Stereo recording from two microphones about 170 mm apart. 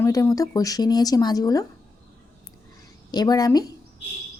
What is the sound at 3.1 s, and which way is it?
Speech, 25° left (ahead or behind).